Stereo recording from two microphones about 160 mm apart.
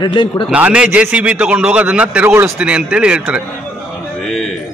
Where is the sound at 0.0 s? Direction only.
30° left (ahead or behind).